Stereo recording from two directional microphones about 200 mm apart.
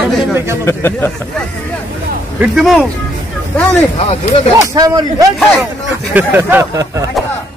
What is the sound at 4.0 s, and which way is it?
Speech, 30° left (ahead or behind).